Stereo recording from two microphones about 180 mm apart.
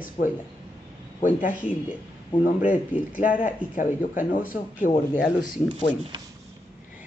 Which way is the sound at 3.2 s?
45° left (ahead or behind).